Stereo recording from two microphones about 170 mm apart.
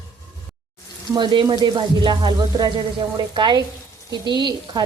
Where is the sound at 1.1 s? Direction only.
25° right (ahead or behind).